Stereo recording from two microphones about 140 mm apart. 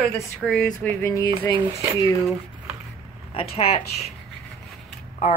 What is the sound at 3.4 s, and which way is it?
Speech, 45° left (ahead or behind).